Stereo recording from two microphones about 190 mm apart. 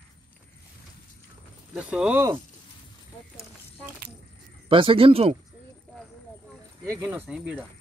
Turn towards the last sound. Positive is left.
turn(degrees=-5)  # may be behind; listen again after turning